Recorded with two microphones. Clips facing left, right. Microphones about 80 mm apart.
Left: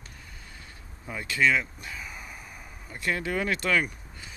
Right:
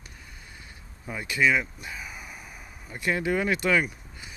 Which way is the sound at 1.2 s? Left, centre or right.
Centre.